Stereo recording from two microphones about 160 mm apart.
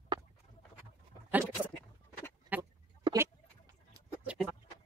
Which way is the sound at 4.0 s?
20° right (ahead or behind).